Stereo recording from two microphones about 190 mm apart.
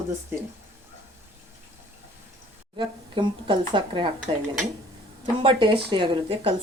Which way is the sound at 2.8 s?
25° right (ahead or behind).